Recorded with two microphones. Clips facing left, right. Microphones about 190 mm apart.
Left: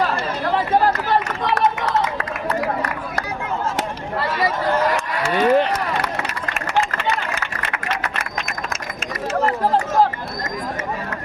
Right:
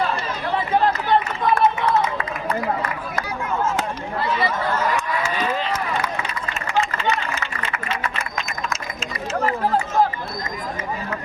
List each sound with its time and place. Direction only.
1.0 s run: 80° left
5.3 s run: 60° left (ahead or behind)